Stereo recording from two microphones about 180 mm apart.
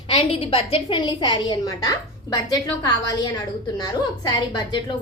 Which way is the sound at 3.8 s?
25° left (ahead or behind).